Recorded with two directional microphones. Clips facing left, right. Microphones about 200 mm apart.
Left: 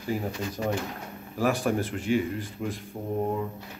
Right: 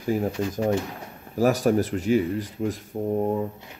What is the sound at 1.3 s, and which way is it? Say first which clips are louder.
Speech: right 5 dB; 40° right (ahead or behind).